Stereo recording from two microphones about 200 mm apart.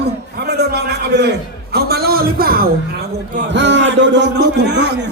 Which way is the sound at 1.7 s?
50° right (ahead or behind).